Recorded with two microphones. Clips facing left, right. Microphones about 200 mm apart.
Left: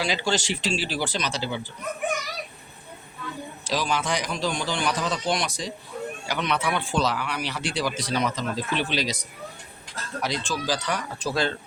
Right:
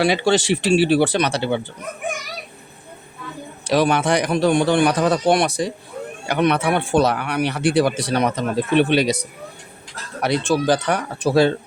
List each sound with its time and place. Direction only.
0.0 s speech: 65° right (ahead or behind)
3.6 s speech: 65° right (ahead or behind)
10.2 s speech: 60° right (ahead or behind)